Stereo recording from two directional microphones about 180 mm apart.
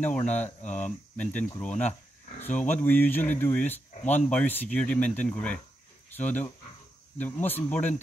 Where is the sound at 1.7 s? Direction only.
40° left (ahead or behind).